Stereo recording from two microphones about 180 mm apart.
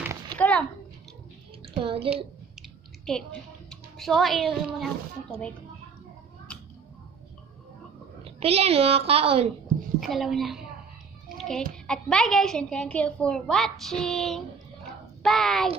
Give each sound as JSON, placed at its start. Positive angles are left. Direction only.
{"t": 0.4, "sound": "a sound", "side_deg": 5}
{"t": 1.8, "sound": "a woman's voice", "side_deg": -30}
{"t": 3.1, "sound": "a woman's voice", "side_deg": 5}
{"t": 8.2, "sound": "a woman's voice", "side_deg": -35}
{"t": 10.0, "sound": "a woman's voice", "side_deg": 0}